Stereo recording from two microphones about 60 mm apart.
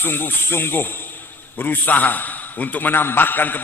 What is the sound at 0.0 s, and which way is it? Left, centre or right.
A man's voice, left.